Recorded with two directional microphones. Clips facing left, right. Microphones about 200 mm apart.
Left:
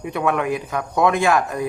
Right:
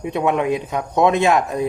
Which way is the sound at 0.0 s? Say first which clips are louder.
Right 2 dB; 20° right (ahead or behind).